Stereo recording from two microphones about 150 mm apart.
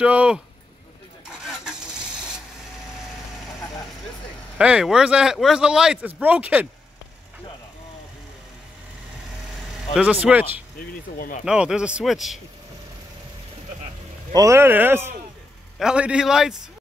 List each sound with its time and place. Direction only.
0.0 s speech: 10° right (ahead or behind)
4.6 s speech: 5° right (ahead or behind)
9.9 s speech: 10° right (ahead or behind)
10.8 s speech: 70° left (ahead or behind)
11.4 s speech: 5° right (ahead or behind)
14.3 s speech: 20° right (ahead or behind); by 16.5 s 5° right (ahead or behind)